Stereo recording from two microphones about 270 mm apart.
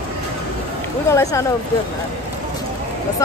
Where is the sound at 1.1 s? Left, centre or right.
Centre.